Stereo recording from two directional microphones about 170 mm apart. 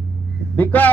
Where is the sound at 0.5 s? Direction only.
10° left (ahead or behind).